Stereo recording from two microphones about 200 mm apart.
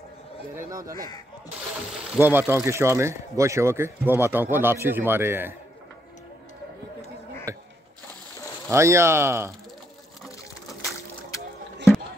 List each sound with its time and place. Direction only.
0.6 s speech: 15° right (ahead or behind)
2.1 s speech: 10° right (ahead or behind)
7.5 s a sound: 15° right (ahead or behind)
8.6 s speech: 15° right (ahead or behind)
10.2 s crushing: centre (ahead or behind)